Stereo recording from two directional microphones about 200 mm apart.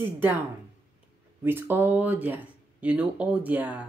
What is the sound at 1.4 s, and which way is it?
Speech, 10° right (ahead or behind).